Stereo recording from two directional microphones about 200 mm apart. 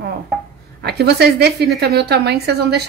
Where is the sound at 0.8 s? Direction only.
55° right (ahead or behind).